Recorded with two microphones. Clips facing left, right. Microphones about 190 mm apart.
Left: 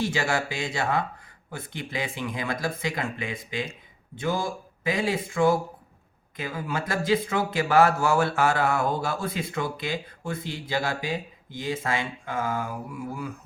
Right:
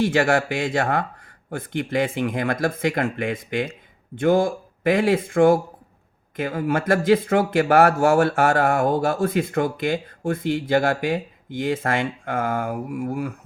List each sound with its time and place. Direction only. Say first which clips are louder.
0.0 s speech: right 7 dB; 60° right (ahead or behind)